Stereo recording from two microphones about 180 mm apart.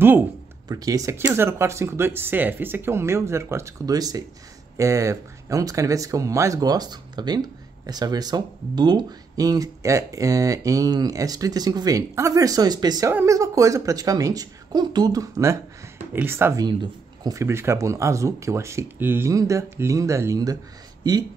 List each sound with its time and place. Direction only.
0.7 s speech: 20° right (ahead or behind)